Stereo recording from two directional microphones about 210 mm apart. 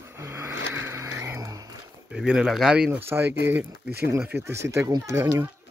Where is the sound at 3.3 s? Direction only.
55° right (ahead or behind).